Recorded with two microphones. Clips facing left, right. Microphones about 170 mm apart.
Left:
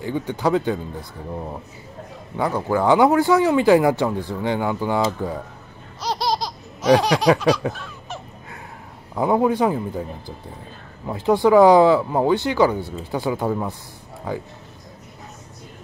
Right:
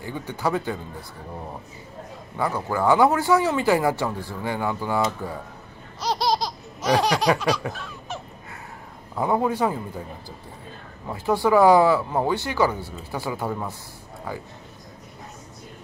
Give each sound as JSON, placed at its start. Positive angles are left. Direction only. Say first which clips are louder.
{"t": 0.4, "sound": "speech", "louder": "left 5 dB", "side_deg": 15}
{"t": 2.3, "sound": "speech", "louder": "left 4 dB", "side_deg": 15}
{"t": 5.9, "sound": "laughter", "louder": "even", "side_deg": 0}
{"t": 7.7, "sound": "honk", "louder": "even", "side_deg": 0}
{"t": 9.1, "sound": "speech", "louder": "left 4 dB", "side_deg": 20}
{"t": 11.1, "sound": "speech", "louder": "left 5 dB", "side_deg": 15}